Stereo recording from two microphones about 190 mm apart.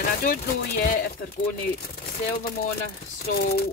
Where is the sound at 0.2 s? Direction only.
50° left (ahead or behind).